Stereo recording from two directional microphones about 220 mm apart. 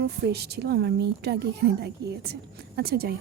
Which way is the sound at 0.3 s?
45° right (ahead or behind).